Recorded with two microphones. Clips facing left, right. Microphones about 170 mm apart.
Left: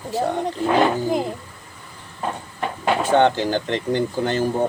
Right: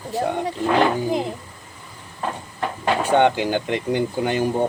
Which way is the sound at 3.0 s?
10° right (ahead or behind).